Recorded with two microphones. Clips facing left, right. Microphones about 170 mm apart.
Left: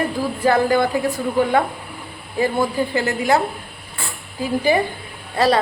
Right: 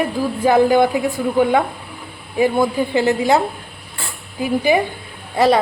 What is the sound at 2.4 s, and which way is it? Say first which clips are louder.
A woman's voice: right 3 dB; 15° right (ahead or behind).